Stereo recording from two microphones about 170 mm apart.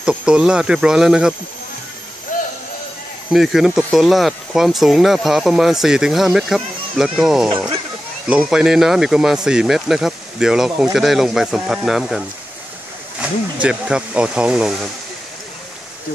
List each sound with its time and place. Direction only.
0.0 s speech: 5° right (ahead or behind)
2.3 s a sound: 50° left (ahead or behind)
3.3 s speech: centre (ahead or behind)